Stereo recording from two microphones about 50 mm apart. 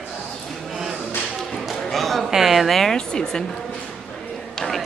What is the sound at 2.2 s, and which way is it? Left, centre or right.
Speech, centre.